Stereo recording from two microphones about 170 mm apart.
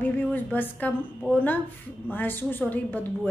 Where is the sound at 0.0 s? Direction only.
10° left (ahead or behind).